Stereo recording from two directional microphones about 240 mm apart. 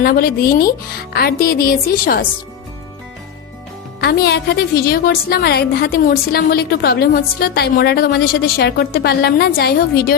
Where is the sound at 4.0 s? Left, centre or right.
Left.